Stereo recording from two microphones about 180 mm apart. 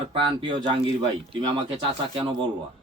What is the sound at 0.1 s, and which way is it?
Speech, 30° right (ahead or behind).